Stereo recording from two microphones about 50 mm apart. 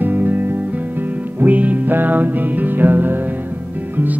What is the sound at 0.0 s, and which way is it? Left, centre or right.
Music, right.